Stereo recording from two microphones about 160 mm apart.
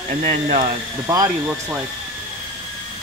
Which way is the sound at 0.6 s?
25° right (ahead or behind).